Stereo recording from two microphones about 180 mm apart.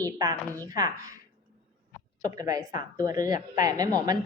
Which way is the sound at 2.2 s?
20° right (ahead or behind).